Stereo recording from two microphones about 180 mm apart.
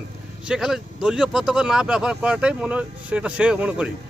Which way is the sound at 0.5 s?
5° right (ahead or behind).